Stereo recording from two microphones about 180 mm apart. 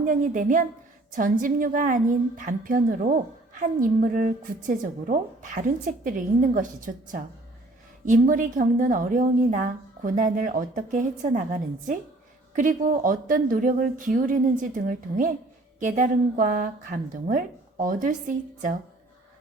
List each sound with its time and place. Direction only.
0.0 s a woman's voice: 45° right (ahead or behind)